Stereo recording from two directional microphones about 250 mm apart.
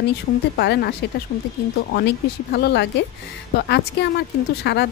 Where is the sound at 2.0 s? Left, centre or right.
Left.